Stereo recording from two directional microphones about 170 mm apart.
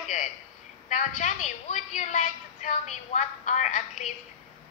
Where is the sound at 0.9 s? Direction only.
45° left (ahead or behind).